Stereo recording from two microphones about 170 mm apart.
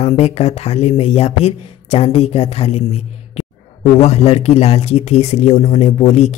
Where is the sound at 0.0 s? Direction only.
40° left (ahead or behind).